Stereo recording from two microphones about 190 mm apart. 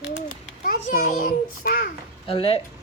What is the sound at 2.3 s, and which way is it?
Speech, 30° left (ahead or behind).